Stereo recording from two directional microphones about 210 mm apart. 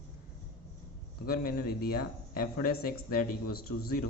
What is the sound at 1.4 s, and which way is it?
Speech, 45° left (ahead or behind).